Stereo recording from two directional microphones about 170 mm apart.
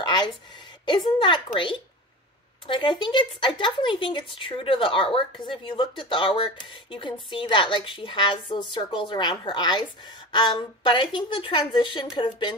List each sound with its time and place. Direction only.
0.0 s a woman's voice: 25° left (ahead or behind)